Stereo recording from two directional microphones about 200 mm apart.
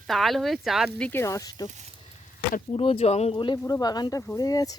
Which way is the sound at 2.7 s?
30° left (ahead or behind).